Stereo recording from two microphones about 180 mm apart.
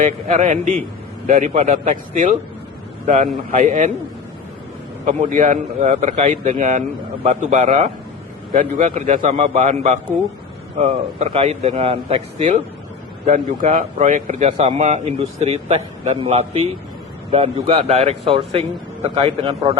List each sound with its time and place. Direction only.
0.0 s a man's voice: 45° right (ahead or behind)
3.5 s a man's voice: 45° right (ahead or behind)
5.0 s a man's voice: 45° right (ahead or behind)